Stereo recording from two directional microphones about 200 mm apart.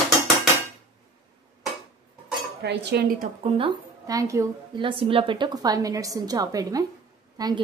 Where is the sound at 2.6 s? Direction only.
55° right (ahead or behind).